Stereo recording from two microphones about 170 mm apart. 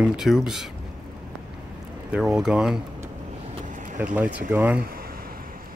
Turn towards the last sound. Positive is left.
turn(degrees=-10)  # may be behind; listen again after turning